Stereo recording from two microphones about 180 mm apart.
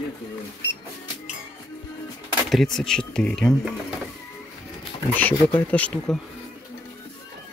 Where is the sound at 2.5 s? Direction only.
Centre (ahead or behind).